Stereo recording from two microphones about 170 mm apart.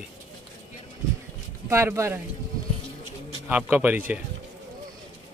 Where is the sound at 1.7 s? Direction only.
15° right (ahead or behind).